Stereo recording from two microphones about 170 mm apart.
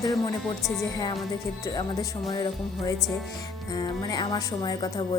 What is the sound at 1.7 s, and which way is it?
Speech, 25° left (ahead or behind).